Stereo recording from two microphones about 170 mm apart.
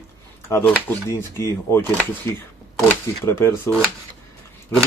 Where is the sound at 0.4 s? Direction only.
15° left (ahead or behind).